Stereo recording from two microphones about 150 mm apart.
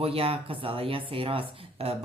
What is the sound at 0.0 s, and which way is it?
Speech, 40° right (ahead or behind).